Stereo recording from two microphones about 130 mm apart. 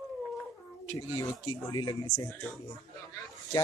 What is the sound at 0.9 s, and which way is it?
A man's voice, 25° left (ahead or behind).